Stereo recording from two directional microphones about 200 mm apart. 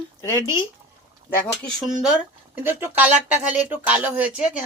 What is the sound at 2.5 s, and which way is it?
Speech, 10° right (ahead or behind).